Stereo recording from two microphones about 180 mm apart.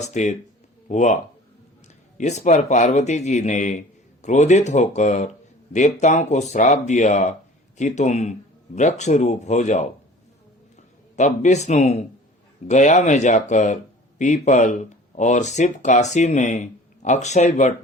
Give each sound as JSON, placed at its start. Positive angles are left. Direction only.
{"t": 0.0, "sound": "speech", "side_deg": 40}
{"t": 2.1, "sound": "speech", "side_deg": 40}
{"t": 11.2, "sound": "speech", "side_deg": 40}